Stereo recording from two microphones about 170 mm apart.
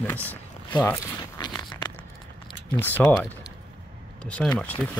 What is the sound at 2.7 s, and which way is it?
Speech, 10° left (ahead or behind).